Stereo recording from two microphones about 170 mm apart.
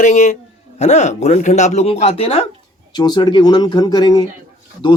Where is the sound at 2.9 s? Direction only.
25° left (ahead or behind).